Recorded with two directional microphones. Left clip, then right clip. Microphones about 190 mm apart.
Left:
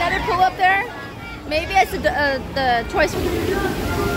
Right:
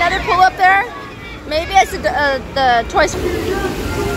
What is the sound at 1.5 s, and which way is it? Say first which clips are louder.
Speech: right 4 dB; 10° left (ahead or behind).